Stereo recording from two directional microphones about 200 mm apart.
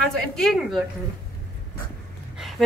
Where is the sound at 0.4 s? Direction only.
Centre (ahead or behind).